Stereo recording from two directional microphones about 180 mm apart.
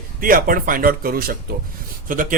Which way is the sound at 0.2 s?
50° right (ahead or behind).